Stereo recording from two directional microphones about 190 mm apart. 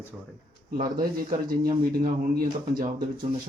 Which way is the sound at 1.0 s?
50° right (ahead or behind).